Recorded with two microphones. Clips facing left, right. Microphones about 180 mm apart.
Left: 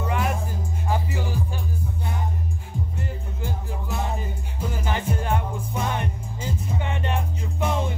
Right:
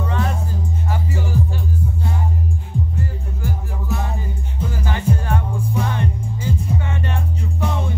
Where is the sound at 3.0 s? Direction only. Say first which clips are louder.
Right 4 dB; 20° left (ahead or behind).